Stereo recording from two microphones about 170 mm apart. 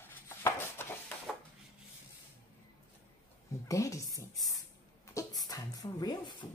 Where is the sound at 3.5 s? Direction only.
20° left (ahead or behind).